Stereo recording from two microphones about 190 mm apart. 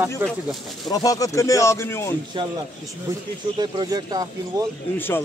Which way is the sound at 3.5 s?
20° right (ahead or behind).